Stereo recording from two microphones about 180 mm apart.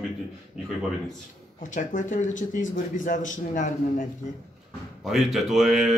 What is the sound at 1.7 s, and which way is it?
Speech, 45° left (ahead or behind).